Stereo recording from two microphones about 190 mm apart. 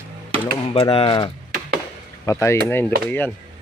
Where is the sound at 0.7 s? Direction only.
30° left (ahead or behind).